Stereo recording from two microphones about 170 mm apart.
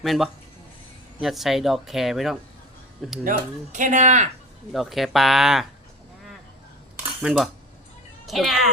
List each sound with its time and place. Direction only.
0.0 s speech: centre (ahead or behind)
3.2 s speech: 50° right (ahead or behind)
4.7 s speech: centre (ahead or behind)
7.2 s speech: 5° right (ahead or behind)